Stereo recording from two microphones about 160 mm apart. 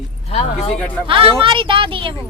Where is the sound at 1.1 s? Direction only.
30° right (ahead or behind).